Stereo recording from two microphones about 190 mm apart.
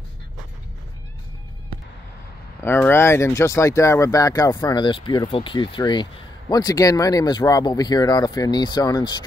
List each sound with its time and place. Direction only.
2.6 s speech: 10° left (ahead or behind)